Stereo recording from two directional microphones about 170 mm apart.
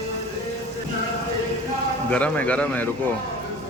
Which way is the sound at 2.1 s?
10° left (ahead or behind).